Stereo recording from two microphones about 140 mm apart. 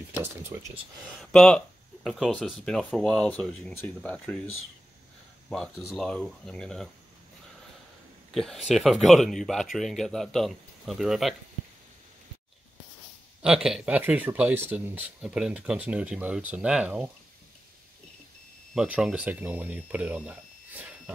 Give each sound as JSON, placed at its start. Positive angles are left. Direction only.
{"t": 0.1, "sound": "speech", "side_deg": -15}
{"t": 1.2, "sound": "speech", "side_deg": 5}
{"t": 5.5, "sound": "speech", "side_deg": 0}
{"t": 8.3, "sound": "speech", "side_deg": 0}
{"t": 13.4, "sound": "speech", "side_deg": -5}
{"t": 18.8, "sound": "speech", "side_deg": -5}